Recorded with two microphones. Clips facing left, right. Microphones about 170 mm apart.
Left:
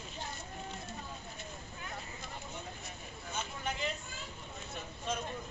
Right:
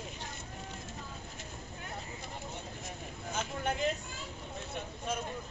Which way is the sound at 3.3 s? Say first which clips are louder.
Right 5 dB; 55° right (ahead or behind).